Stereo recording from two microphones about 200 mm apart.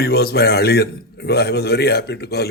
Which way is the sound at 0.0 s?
50° left (ahead or behind).